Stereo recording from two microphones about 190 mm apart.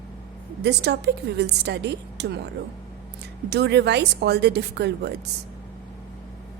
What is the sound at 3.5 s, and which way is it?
A woman's voice, 60° right (ahead or behind).